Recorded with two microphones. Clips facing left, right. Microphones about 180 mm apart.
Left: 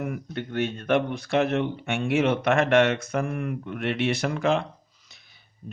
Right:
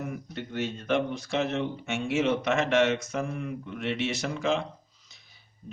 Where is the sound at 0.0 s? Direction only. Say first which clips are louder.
Left 4 dB; 60° left (ahead or behind).